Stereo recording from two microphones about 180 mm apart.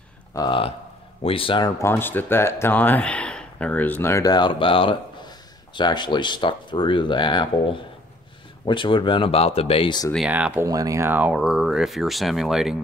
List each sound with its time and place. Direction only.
0.3 s speech: 25° left (ahead or behind)
1.8 s speech: 10° left (ahead or behind)
10.1 s speech: 5° right (ahead or behind)